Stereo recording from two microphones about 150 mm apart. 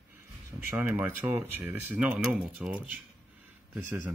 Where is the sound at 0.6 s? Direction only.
15° right (ahead or behind).